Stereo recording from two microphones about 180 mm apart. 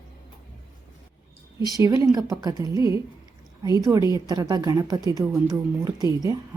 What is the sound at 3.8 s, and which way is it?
Speech, 20° right (ahead or behind).